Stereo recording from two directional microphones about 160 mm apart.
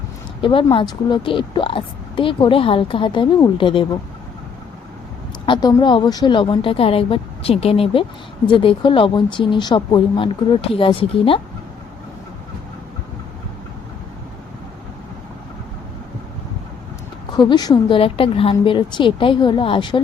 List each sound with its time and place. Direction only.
0.4 s a woman's voice: 30° left (ahead or behind)
5.5 s a woman's voice: 25° left (ahead or behind)
17.3 s a woman's voice: 25° left (ahead or behind)